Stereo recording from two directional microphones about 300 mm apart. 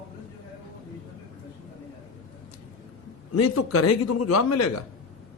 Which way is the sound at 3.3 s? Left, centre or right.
Left.